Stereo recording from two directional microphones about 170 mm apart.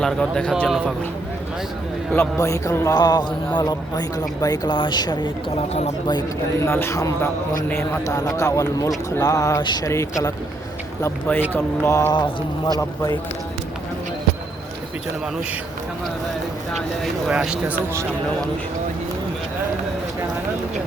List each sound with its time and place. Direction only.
0.0 s speech: 5° left (ahead or behind)
2.1 s speech: 20° left (ahead or behind)
6.7 s a man's voice: 15° left (ahead or behind)
16.7 s speech: centre (ahead or behind)